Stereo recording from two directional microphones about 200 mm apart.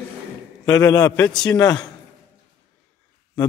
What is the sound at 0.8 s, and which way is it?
A man's voice, 20° left (ahead or behind).